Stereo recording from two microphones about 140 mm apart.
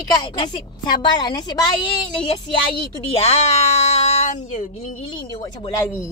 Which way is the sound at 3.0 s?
50° left (ahead or behind).